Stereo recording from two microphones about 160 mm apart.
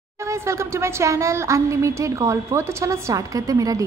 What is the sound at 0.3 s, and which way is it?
A woman's voice, 15° right (ahead or behind).